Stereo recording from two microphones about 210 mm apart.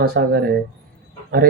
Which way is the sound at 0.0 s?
50° right (ahead or behind).